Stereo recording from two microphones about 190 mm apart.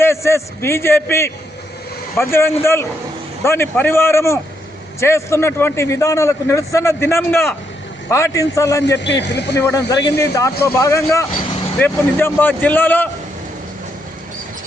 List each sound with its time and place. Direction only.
0.0 s a man's voice: 15° left (ahead or behind)
9.0 s a man's voice: 65° left (ahead or behind)
9.6 s a man's voice: 15° left (ahead or behind)